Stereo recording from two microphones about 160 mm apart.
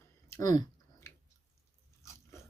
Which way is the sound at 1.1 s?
15° left (ahead or behind).